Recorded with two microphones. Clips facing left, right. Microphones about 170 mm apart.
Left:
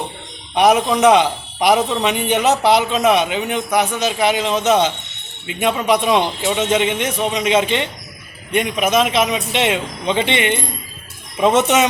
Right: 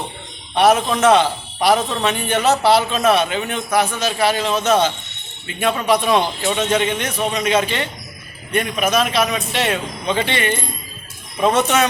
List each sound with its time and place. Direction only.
0.5 s a man's voice: 15° left (ahead or behind)